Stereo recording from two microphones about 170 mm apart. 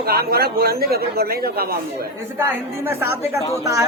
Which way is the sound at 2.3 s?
10° right (ahead or behind).